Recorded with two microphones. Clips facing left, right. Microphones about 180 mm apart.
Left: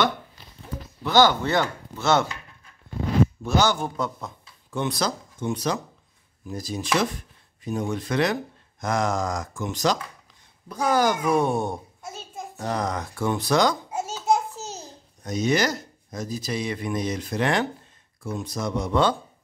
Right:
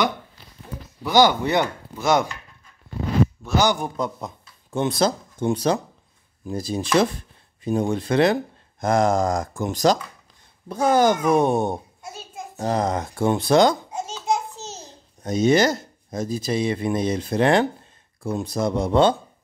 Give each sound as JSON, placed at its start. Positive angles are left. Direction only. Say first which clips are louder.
{"t": 1.0, "sound": "speech", "louder": "right 2 dB", "side_deg": -15}
{"t": 3.6, "sound": "a man's voice", "louder": "right 2 dB", "side_deg": -15}
{"t": 10.7, "sound": "speech", "louder": "right 4 dB", "side_deg": -25}
{"t": 12.0, "sound": "a sound", "louder": "even", "side_deg": 0}
{"t": 12.5, "sound": "speech", "louder": "right 5 dB", "side_deg": -25}
{"t": 13.8, "sound": "babbling", "louder": "left 2 dB", "side_deg": 5}
{"t": 15.2, "sound": "a man's voice", "louder": "right 5 dB", "side_deg": -25}